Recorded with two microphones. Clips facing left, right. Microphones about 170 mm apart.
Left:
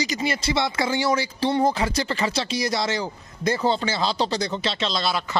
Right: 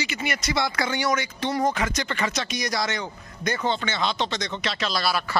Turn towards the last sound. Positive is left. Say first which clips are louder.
# left 1 dB
turn(degrees=20)  # may be behind; listen again after turning